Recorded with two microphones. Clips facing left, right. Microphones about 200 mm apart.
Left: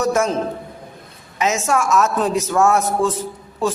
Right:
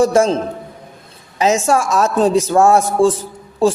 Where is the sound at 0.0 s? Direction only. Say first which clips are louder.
Right 6 dB; 30° right (ahead or behind).